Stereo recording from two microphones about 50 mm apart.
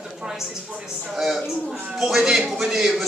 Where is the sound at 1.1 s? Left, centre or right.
Centre.